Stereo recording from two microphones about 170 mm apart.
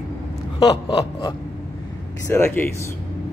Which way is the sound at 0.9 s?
25° left (ahead or behind).